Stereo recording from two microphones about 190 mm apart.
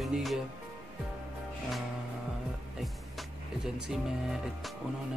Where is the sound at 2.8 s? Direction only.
Centre (ahead or behind).